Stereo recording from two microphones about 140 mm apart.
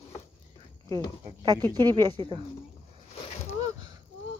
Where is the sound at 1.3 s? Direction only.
30° right (ahead or behind).